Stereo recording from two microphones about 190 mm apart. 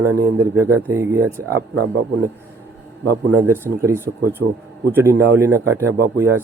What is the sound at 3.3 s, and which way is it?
A man's voice, 15° right (ahead or behind).